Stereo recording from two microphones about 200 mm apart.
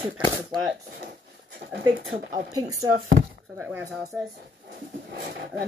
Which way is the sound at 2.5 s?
15° right (ahead or behind).